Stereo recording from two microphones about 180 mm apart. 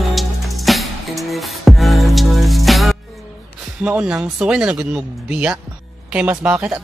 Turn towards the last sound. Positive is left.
turn(degrees=-5)  # may be behind; listen again after turning